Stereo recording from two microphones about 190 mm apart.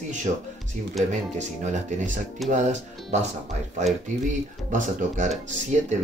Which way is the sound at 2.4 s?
Centre (ahead or behind).